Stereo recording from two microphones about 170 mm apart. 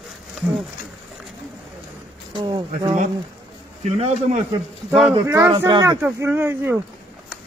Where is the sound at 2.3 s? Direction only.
25° right (ahead or behind).